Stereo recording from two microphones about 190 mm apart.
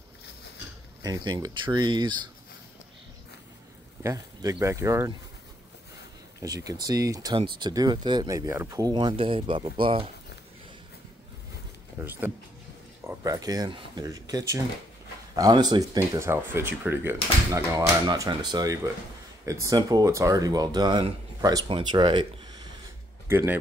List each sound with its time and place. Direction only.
1.0 s speech: 20° right (ahead or behind)
4.0 s speech: 20° right (ahead or behind)
6.4 s speech: 20° right (ahead or behind)
12.0 s speech: 10° right (ahead or behind)